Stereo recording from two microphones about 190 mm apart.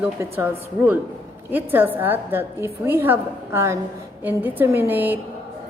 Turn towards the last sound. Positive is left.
turn(degrees=-10)  # may be behind; listen again after turning